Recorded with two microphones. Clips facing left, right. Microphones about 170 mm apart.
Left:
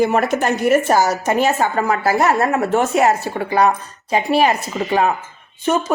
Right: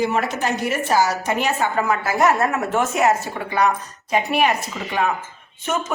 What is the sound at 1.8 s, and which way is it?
A woman's voice, 35° left (ahead or behind).